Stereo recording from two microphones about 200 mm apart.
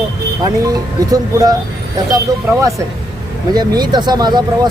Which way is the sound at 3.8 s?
20° right (ahead or behind).